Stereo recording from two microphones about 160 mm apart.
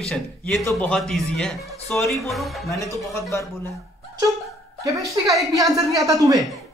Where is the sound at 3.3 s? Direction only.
20° left (ahead or behind).